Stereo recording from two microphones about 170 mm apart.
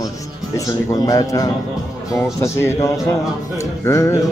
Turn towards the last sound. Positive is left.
turn(degrees=15)  # may be behind; listen again after turning